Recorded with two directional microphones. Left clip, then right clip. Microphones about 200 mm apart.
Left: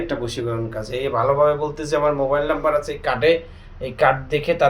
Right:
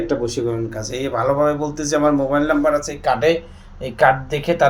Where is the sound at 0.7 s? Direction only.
15° right (ahead or behind).